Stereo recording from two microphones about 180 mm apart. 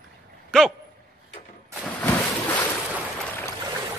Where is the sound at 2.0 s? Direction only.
10° left (ahead or behind).